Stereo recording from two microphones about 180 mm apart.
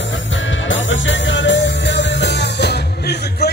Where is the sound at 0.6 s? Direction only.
90° left.